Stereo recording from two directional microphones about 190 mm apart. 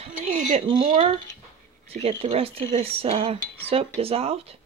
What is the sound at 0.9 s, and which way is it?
Speech, 35° right (ahead or behind).